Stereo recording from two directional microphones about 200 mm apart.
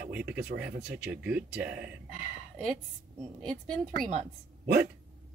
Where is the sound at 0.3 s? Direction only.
55° right (ahead or behind).